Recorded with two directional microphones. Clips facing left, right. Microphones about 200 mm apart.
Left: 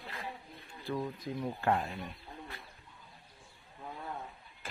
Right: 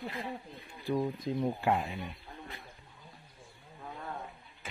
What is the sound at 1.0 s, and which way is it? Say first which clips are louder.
Speech: right 5 dB; 25° right (ahead or behind).